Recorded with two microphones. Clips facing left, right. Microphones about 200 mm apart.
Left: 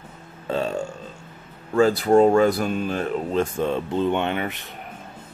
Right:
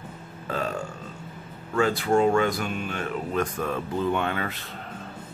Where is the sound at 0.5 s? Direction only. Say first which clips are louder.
Left 5 dB; 25° left (ahead or behind).